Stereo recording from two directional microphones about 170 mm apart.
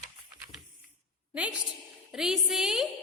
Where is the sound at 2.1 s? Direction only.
5° right (ahead or behind).